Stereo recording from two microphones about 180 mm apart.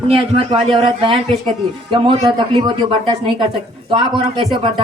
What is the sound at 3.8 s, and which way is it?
Speech, 25° right (ahead or behind).